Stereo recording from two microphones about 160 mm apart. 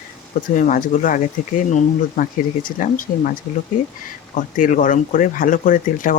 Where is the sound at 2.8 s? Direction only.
55° left (ahead or behind).